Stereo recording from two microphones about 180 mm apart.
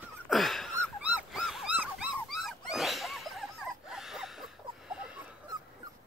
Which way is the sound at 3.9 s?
Centre (ahead or behind).